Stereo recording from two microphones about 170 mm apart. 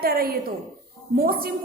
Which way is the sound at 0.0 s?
65° right (ahead or behind).